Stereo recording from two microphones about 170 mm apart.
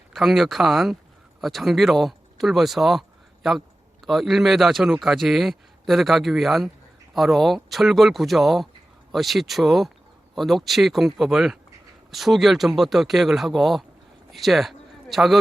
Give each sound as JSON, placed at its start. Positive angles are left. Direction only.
{"t": 0.1, "sound": "a man's voice", "side_deg": 0}
{"t": 4.0, "sound": "a man's voice", "side_deg": 0}